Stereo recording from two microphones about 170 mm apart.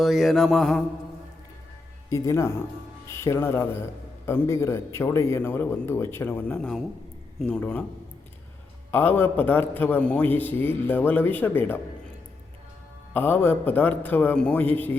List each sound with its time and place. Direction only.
0.0 s mantra: centre (ahead or behind)
2.0 s a man's voice: 15° left (ahead or behind)
8.9 s a man's voice: 10° left (ahead or behind)
13.1 s a man's voice: 10° left (ahead or behind)